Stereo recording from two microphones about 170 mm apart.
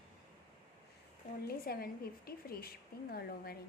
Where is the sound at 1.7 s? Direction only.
65° left (ahead or behind).